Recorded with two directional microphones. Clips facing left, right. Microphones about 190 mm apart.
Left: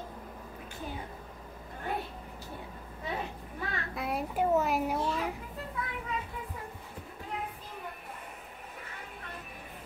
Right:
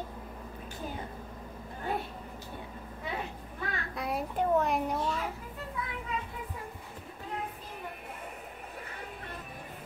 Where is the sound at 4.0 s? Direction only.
Centre (ahead or behind).